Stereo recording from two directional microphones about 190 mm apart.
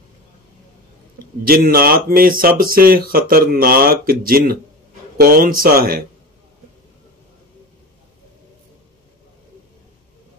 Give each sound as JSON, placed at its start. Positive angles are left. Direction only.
{"t": 1.4, "sound": "speech", "side_deg": -50}